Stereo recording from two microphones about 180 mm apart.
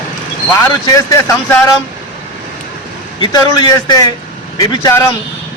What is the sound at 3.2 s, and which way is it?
A man's voice, 20° left (ahead or behind).